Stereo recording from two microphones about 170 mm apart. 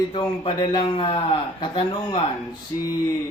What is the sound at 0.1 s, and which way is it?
A man's voice, 30° left (ahead or behind).